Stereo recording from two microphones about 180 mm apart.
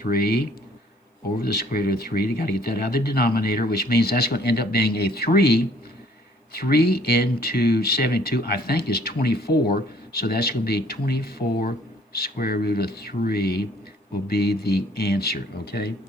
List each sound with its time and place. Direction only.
0.0 s speech: 55° left (ahead or behind)